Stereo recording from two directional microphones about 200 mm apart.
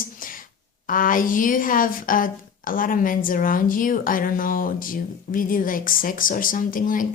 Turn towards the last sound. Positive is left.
turn(degrees=45)  # may be behind; listen again after turning